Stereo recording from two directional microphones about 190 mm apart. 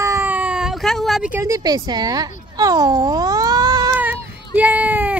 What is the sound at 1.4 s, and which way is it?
Speech, 20° right (ahead or behind).